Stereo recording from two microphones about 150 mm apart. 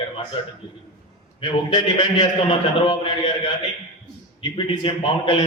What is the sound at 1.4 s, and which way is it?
A man's voice, 30° left (ahead or behind).